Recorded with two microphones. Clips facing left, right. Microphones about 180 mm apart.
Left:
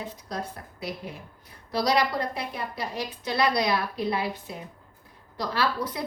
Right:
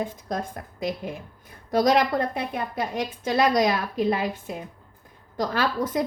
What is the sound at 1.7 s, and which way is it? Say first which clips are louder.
A woman's voice: right 4 dB; 50° right (ahead or behind).